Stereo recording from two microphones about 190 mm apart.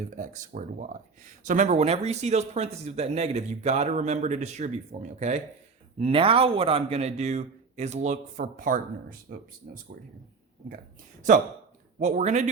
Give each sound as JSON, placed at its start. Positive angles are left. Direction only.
{"t": 0.1, "sound": "speech", "side_deg": -40}
{"t": 11.9, "sound": "speech", "side_deg": -40}